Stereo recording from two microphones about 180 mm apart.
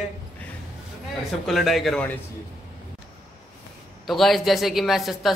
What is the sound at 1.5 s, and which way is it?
Speech, centre (ahead or behind).